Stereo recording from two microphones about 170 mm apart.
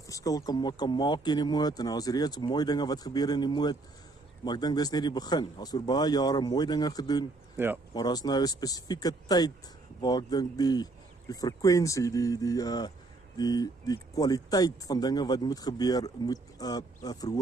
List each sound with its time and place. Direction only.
0.0 s speech: 20° left (ahead or behind)
7.5 s speech: 10° right (ahead or behind)
7.9 s speech: 25° left (ahead or behind)